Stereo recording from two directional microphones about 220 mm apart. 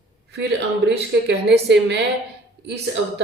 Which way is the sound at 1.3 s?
50° right (ahead or behind).